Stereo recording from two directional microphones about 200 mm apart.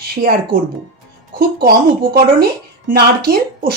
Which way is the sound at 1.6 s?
50° right (ahead or behind).